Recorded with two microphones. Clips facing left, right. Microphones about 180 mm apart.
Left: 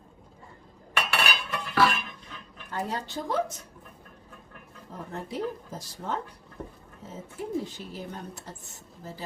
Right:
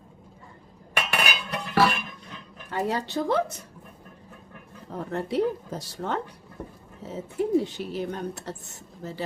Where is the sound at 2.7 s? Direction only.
75° right (ahead or behind).